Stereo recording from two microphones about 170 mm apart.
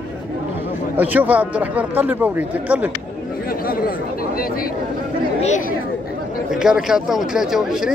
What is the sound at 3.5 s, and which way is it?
Chatter, 60° left (ahead or behind).